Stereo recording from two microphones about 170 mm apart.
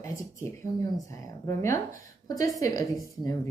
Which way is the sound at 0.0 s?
20° left (ahead or behind).